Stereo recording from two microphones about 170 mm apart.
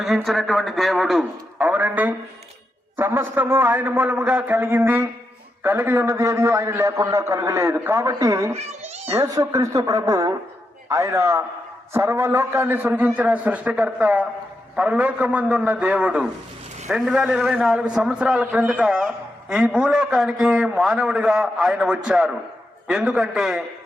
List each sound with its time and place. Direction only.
0.3 s a man's voice: centre (ahead or behind)